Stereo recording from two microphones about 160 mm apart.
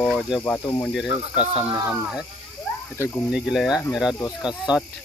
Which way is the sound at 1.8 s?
15° right (ahead or behind).